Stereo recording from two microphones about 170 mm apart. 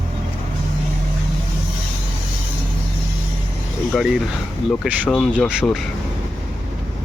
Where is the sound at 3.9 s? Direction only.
Centre (ahead or behind).